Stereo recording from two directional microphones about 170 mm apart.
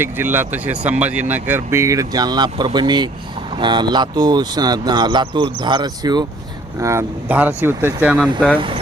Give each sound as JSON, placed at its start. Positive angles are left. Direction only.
{"t": 0.0, "sound": "speech", "side_deg": -10}